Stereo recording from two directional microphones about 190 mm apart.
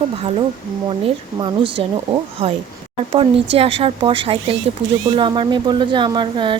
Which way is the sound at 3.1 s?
30° right (ahead or behind).